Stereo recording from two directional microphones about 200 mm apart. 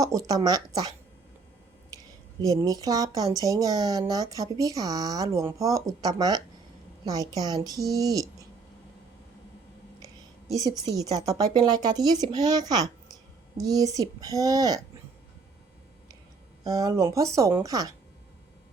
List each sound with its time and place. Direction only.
0.0 s a woman's voice: 15° right (ahead or behind)
2.6 s speech: 20° right (ahead or behind)
10.5 s a woman's voice: 20° right (ahead or behind)
16.6 s speech: 20° right (ahead or behind)